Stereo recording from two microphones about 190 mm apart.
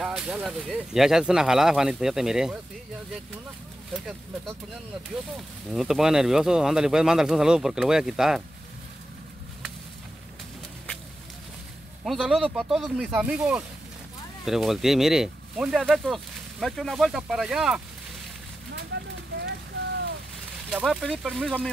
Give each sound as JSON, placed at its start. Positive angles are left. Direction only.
{"t": 0.0, "sound": "speech", "side_deg": -5}
{"t": 5.3, "sound": "speech", "side_deg": 0}
{"t": 12.0, "sound": "speech", "side_deg": 0}
{"t": 18.9, "sound": "clip-clop", "side_deg": -60}
{"t": 20.7, "sound": "speech", "side_deg": 0}